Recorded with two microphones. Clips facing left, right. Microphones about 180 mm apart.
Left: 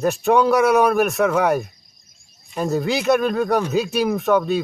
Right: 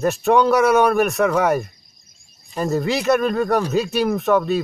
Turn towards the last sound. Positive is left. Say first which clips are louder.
# even
turn(degrees=0)  # may be behind; listen again after turning